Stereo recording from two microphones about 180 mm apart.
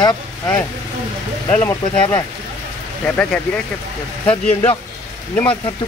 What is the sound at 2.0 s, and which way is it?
Speech, 20° left (ahead or behind).